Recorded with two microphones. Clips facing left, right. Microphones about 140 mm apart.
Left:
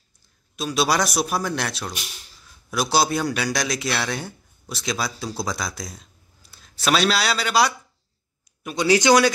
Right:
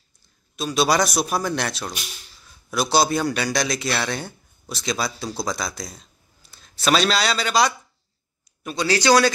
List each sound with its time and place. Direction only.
0.6 s a man's voice: 5° left (ahead or behind)
8.7 s speech: 20° left (ahead or behind)